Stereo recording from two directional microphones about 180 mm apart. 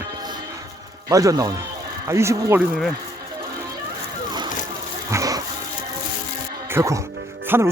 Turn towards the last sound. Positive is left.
turn(degrees=-15)  # may be behind; listen again after turning